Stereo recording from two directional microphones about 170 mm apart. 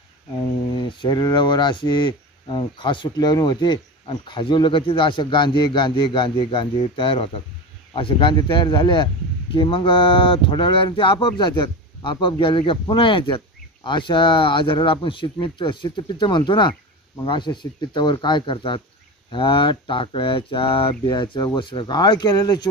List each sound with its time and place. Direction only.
0.7 s mantra: 30° left (ahead or behind)